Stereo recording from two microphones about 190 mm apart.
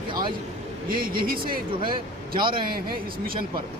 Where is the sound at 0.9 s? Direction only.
50° right (ahead or behind).